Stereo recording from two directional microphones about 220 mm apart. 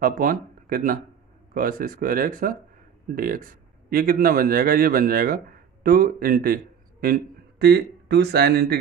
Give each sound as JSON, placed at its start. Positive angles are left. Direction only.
{"t": 0.0, "sound": "a man's voice", "side_deg": -40}